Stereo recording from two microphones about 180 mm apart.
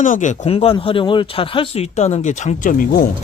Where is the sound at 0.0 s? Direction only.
45° left (ahead or behind).